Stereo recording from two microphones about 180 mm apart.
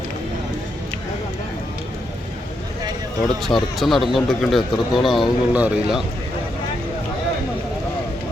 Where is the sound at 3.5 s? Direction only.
Centre (ahead or behind).